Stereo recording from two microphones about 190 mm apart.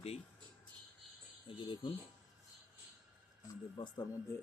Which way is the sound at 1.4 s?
25° left (ahead or behind).